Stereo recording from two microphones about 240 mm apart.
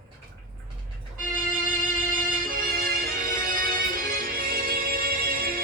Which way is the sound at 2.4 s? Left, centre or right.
Right.